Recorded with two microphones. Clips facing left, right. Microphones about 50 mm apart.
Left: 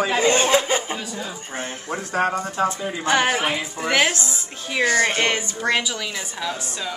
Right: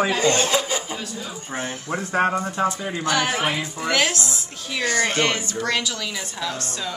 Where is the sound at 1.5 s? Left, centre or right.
Centre.